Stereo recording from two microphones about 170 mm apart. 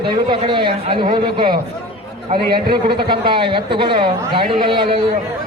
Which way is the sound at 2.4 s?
60° right (ahead or behind).